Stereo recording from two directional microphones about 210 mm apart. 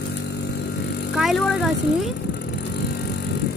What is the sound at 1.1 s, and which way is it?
Speech, centre (ahead or behind).